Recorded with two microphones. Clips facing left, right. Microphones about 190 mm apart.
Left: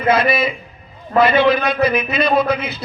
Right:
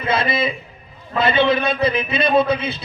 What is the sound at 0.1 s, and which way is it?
A man's voice, 25° right (ahead or behind).